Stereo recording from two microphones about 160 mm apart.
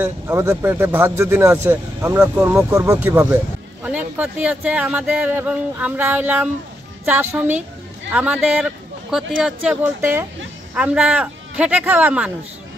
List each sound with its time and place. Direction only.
0.3 s speech: 15° right (ahead or behind)
2.7 s a man's voice: 20° right (ahead or behind); by 9.8 s centre (ahead or behind)
10.8 s speech: 5° right (ahead or behind)